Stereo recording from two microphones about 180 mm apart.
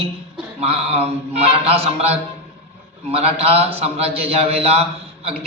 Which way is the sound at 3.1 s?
35° right (ahead or behind).